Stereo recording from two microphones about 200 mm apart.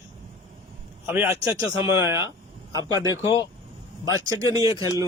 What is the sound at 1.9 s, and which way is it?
Speech, 10° right (ahead or behind).